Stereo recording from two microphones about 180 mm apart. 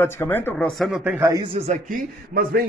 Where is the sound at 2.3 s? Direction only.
60° right (ahead or behind).